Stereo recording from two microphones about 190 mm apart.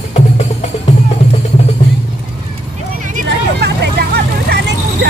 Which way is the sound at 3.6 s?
60° right (ahead or behind).